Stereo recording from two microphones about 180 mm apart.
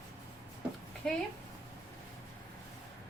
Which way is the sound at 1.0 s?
5° left (ahead or behind).